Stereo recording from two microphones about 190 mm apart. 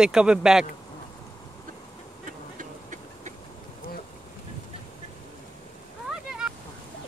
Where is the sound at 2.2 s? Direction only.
45° right (ahead or behind).